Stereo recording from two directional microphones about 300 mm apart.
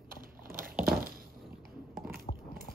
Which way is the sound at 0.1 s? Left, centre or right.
Right.